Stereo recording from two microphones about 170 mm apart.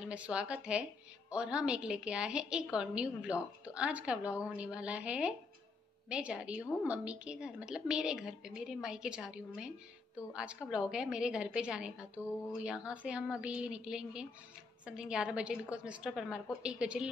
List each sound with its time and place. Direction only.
0.0 s a woman's voice: 5° right (ahead or behind)